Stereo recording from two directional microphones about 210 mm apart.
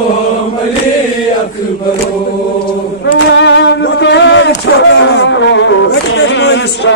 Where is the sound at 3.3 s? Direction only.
55° left (ahead or behind).